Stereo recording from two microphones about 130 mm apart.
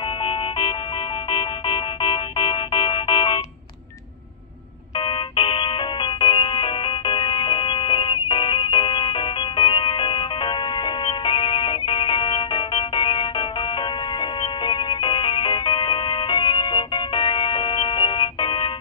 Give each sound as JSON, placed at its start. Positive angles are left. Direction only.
{"t": 0.2, "sound": "music", "side_deg": 40}
{"t": 4.9, "sound": "music", "side_deg": 40}